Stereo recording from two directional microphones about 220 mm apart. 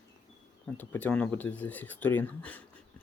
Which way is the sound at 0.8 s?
5° left (ahead or behind).